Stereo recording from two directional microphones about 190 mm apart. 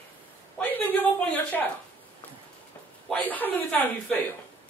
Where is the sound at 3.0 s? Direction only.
10° left (ahead or behind).